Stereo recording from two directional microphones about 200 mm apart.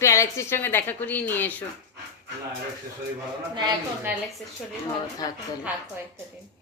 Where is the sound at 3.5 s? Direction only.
20° right (ahead or behind).